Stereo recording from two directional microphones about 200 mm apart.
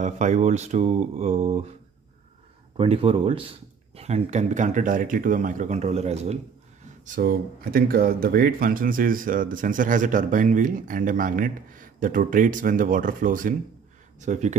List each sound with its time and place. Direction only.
0.0 s speech: 35° right (ahead or behind)
2.8 s speech: 25° right (ahead or behind)
7.1 s speech: 45° right (ahead or behind)